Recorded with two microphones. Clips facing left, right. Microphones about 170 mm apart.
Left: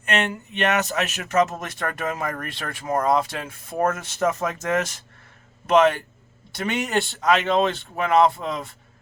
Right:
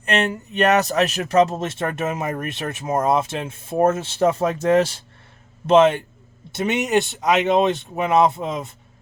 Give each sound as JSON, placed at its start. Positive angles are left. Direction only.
{"t": 0.0, "sound": "speech", "side_deg": -35}